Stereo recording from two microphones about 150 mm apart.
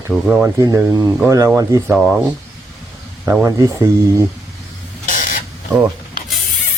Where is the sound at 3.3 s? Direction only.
20° right (ahead or behind).